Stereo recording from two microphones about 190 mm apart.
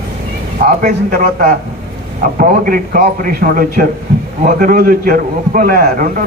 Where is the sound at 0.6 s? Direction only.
45° right (ahead or behind).